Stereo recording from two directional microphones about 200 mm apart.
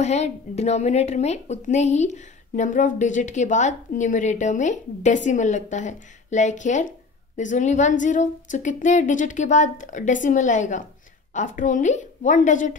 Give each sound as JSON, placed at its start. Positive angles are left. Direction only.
{"t": 0.0, "sound": "a woman's voice", "side_deg": 35}